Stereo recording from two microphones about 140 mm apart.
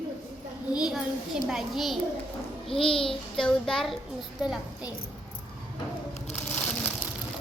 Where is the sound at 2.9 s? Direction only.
40° left (ahead or behind).